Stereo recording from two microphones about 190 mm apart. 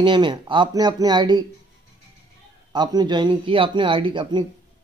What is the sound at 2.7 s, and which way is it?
Speech, 20° right (ahead or behind).